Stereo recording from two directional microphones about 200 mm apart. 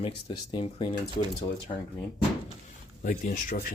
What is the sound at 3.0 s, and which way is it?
Speech, 45° left (ahead or behind).